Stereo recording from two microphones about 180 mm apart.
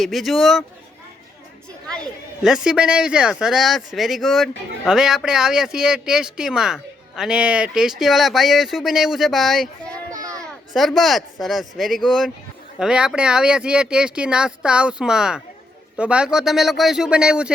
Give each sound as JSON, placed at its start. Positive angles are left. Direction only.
{"t": 0.0, "sound": "speech", "side_deg": 0}
{"t": 2.4, "sound": "speech", "side_deg": -5}
{"t": 10.1, "sound": "a sound", "side_deg": -20}
{"t": 10.4, "sound": "speech", "side_deg": 0}